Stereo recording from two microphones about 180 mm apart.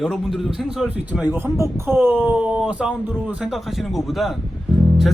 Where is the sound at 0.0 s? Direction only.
Centre (ahead or behind).